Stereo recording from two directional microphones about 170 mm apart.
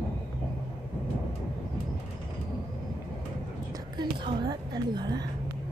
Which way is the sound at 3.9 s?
25° right (ahead or behind).